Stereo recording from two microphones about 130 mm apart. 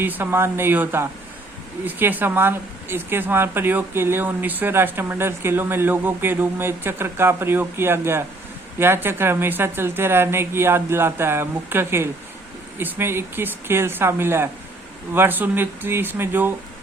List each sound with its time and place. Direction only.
0.0 s speech: 15° right (ahead or behind)